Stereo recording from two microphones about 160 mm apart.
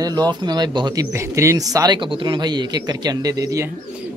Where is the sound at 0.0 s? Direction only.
25° right (ahead or behind).